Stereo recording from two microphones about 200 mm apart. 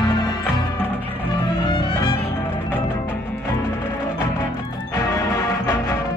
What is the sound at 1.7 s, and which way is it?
Music, 25° left (ahead or behind).